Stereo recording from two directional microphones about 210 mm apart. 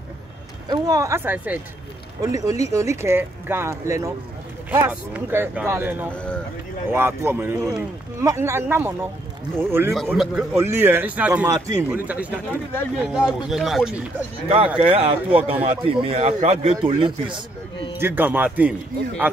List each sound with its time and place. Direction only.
0.7 s speech: 15° right (ahead or behind)
6.1 s a man's voice: 5° left (ahead or behind)
6.9 s a man's voice: 10° right (ahead or behind)
14.8 s a man's voice: 25° right (ahead or behind)
17.9 s speech: 10° right (ahead or behind)